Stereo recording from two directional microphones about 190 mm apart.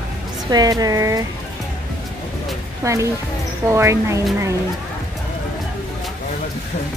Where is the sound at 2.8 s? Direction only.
15° right (ahead or behind).